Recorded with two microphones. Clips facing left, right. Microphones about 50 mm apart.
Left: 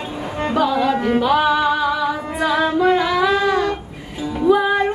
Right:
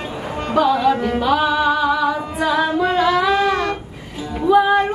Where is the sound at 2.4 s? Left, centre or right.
Centre.